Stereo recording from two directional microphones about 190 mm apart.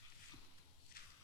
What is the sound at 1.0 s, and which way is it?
Walk, 55° left (ahead or behind).